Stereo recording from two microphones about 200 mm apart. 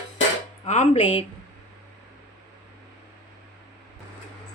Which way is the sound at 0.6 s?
30° left (ahead or behind).